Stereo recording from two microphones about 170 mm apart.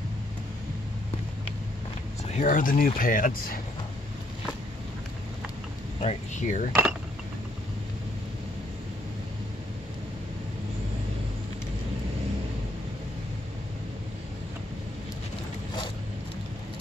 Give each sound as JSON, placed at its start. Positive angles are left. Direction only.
{"t": 2.3, "sound": "speech", "side_deg": 50}
{"t": 5.9, "sound": "speech", "side_deg": 40}
{"t": 6.7, "sound": "speech", "side_deg": -10}